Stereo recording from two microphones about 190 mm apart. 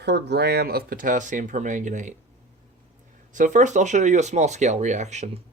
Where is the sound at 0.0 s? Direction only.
60° right (ahead or behind); by 2.1 s 40° right (ahead or behind).